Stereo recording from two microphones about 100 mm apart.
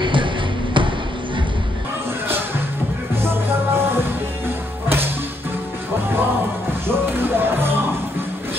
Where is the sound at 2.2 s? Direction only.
25° right (ahead or behind).